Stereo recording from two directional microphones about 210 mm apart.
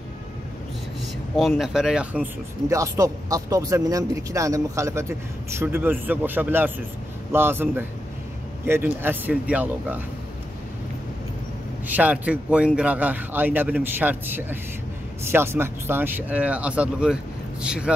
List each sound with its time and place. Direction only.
1.6 s speech: centre (ahead or behind)
2.7 s speech: 15° right (ahead or behind)
11.9 s speech: 5° right (ahead or behind)